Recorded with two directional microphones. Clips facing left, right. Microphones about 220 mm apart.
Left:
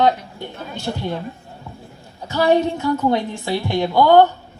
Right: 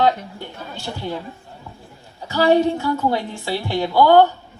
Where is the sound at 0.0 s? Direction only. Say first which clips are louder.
Left 1 dB; 20° left (ahead or behind).